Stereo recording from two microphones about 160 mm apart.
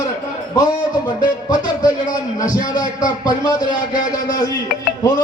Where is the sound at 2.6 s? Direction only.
25° left (ahead or behind).